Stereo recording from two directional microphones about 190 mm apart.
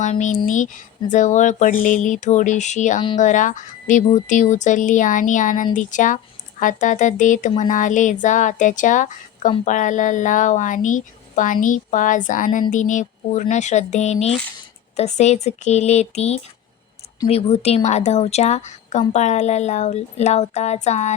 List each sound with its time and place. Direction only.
0.0 s speech: 40° left (ahead or behind)